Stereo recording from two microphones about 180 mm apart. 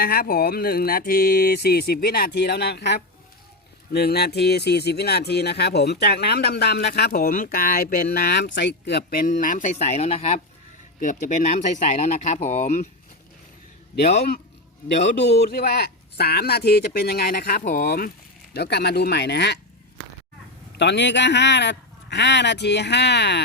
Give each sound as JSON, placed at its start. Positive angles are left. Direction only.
{"t": 0.0, "sound": "speech", "side_deg": 60}
{"t": 15.3, "sound": "speech", "side_deg": 60}
{"t": 17.6, "sound": "speech", "side_deg": 45}
{"t": 17.8, "sound": "speech", "side_deg": 55}
{"t": 18.5, "sound": "speech", "side_deg": 65}
{"t": 20.7, "sound": "speech", "side_deg": 80}